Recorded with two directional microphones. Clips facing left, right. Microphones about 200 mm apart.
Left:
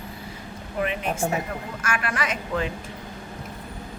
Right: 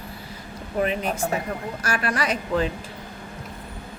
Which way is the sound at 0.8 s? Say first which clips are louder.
Right 2 dB; 35° right (ahead or behind).